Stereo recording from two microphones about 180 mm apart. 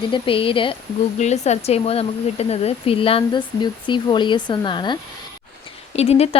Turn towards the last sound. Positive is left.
turn(degrees=35)  # may be behind; listen again after turning